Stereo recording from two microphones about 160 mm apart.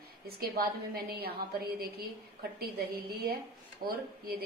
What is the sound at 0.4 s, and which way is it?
A woman's voice, 75° right (ahead or behind).